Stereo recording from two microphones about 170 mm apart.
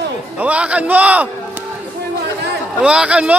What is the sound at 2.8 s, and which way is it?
Speech, 5° right (ahead or behind).